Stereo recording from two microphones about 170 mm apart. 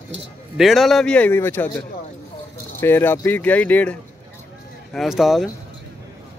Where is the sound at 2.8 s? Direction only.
15° left (ahead or behind).